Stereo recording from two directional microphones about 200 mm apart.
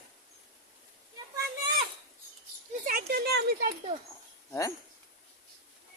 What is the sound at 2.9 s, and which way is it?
Speech, 45° right (ahead or behind).